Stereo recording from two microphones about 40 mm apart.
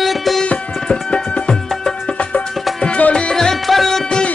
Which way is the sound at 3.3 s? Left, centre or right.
Centre.